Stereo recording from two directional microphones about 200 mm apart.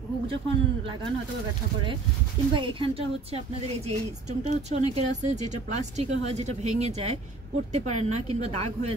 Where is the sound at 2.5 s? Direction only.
25° right (ahead or behind).